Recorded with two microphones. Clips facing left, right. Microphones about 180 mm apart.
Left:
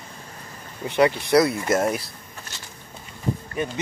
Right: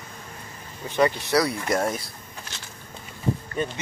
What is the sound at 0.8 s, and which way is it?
Speech, 15° left (ahead or behind).